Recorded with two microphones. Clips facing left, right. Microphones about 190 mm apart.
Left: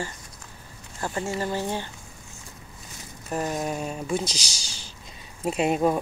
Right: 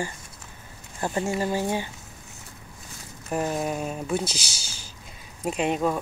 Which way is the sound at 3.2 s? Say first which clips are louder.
Right 1 dB; 5° right (ahead or behind).